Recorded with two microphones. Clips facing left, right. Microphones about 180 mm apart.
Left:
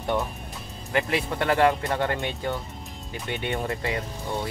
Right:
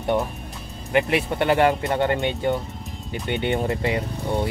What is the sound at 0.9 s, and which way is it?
Speech, 25° right (ahead or behind).